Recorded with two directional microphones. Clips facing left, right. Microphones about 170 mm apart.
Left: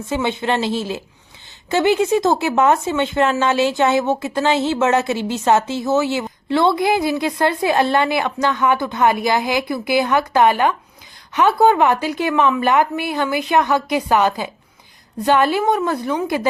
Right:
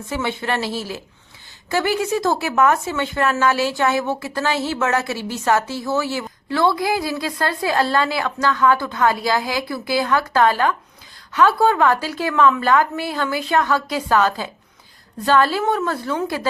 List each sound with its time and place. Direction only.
0.1 s speech: 20° left (ahead or behind)